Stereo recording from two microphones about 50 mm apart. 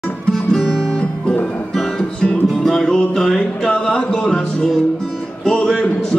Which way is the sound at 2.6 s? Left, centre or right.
Centre.